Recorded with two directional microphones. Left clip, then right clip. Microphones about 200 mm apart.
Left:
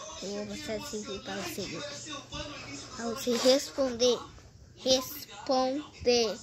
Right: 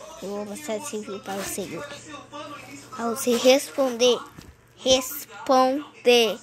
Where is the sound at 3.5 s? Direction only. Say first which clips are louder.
Right 7 dB; 10° left (ahead or behind).